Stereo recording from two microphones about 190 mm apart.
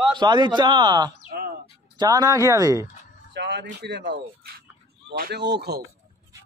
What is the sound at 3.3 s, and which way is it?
Speech, 65° right (ahead or behind).